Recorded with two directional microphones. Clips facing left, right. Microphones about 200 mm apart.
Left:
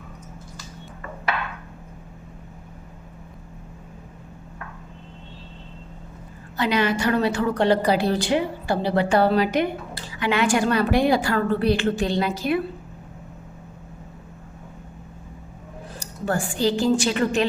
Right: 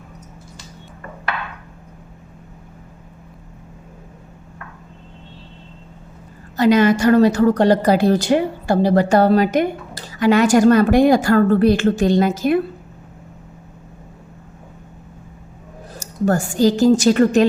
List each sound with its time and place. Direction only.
6.6 s a woman's voice: 45° right (ahead or behind)
16.0 s speech: 45° right (ahead or behind)